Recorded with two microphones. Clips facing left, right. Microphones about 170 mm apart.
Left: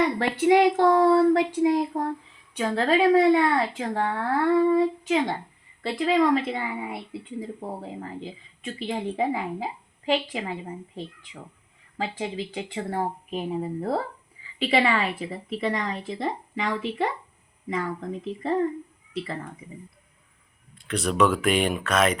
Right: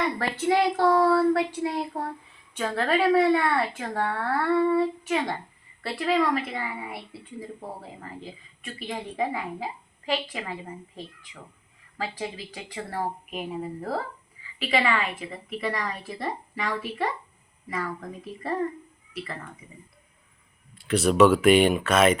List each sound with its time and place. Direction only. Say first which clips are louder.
0.2 s a woman's voice: left 5 dB; 15° left (ahead or behind)
11.9 s a woman's voice: left 3 dB; 20° left (ahead or behind)
20.7 s speech: right 4 dB; 5° right (ahead or behind)